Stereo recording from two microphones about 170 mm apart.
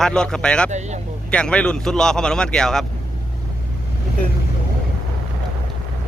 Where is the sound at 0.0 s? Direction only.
5° left (ahead or behind).